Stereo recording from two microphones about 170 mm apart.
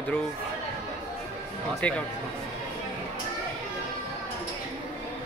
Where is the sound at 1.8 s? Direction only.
10° left (ahead or behind).